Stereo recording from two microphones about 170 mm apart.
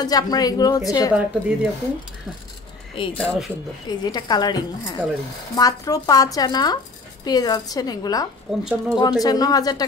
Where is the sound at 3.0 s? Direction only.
30° left (ahead or behind).